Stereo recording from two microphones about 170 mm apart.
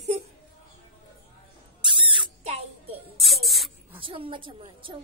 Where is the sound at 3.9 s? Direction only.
30° right (ahead or behind).